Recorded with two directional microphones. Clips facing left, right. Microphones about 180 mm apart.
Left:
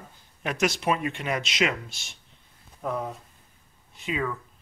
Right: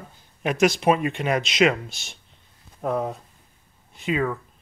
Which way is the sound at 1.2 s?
60° right (ahead or behind).